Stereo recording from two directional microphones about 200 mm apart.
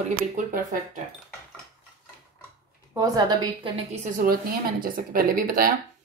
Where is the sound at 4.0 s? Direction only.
45° right (ahead or behind).